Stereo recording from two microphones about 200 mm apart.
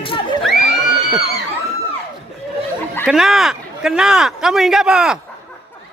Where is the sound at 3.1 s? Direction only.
Centre (ahead or behind).